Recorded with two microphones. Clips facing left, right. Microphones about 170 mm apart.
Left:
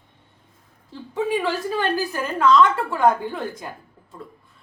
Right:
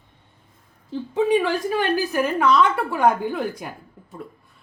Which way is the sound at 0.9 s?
20° right (ahead or behind).